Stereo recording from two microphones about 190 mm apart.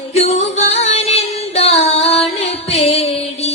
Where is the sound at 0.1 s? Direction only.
35° left (ahead or behind).